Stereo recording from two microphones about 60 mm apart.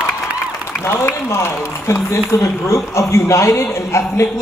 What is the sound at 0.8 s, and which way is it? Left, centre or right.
A man's voice, left.